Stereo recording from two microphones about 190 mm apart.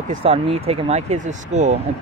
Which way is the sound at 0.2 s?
30° right (ahead or behind).